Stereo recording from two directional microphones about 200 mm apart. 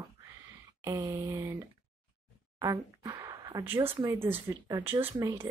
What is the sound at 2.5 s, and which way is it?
Speech, 15° right (ahead or behind).